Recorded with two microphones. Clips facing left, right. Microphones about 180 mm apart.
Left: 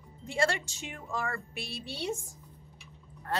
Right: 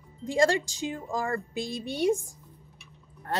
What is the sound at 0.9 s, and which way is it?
Speech, 35° right (ahead or behind).